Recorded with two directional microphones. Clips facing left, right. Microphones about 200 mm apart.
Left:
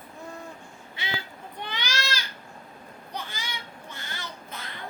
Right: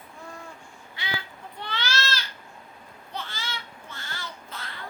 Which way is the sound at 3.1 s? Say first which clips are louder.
Right 1 dB; 15° left (ahead or behind).